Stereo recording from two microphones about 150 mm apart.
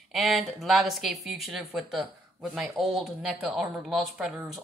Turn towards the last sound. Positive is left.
turn(degrees=0)  # may be behind; listen again after turning